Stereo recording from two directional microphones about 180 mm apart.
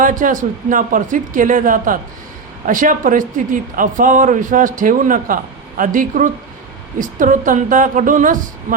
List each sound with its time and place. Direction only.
0.0 s speech: 45° right (ahead or behind)